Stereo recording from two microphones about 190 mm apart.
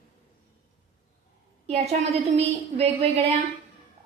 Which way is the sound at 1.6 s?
35° right (ahead or behind).